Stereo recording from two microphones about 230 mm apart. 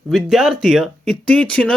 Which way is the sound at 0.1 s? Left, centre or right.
Centre.